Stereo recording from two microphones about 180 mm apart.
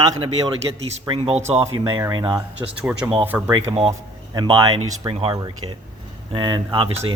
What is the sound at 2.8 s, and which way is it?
Speech, 5° right (ahead or behind).